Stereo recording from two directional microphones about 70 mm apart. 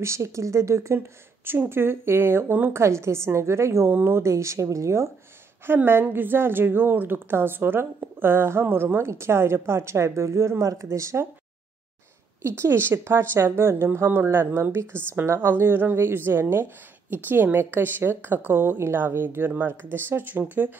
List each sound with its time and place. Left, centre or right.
0.0 s speech: right
0.9 s speech: right
5.9 s speech: right
12.4 s speech: right